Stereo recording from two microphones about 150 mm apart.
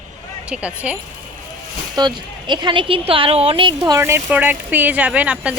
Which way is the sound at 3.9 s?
20° right (ahead or behind).